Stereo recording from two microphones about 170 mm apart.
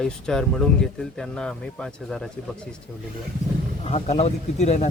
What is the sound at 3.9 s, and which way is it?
Speech, 40° left (ahead or behind).